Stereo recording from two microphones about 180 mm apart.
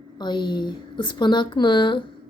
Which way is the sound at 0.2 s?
25° left (ahead or behind).